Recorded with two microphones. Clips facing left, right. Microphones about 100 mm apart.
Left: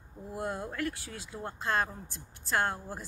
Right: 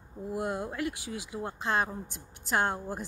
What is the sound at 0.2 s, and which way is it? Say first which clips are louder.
Speech: right 3 dB; 20° right (ahead or behind).